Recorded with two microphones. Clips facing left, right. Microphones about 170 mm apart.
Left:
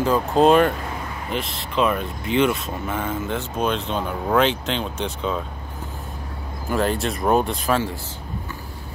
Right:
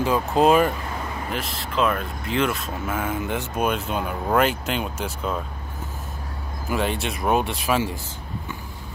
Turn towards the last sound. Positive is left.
turn(degrees=-5)  # may be behind; listen again after turning